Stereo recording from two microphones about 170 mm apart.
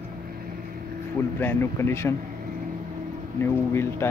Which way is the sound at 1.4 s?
10° left (ahead or behind).